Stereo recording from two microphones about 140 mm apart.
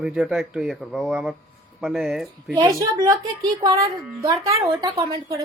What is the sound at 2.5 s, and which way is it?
A woman's voice, 25° right (ahead or behind).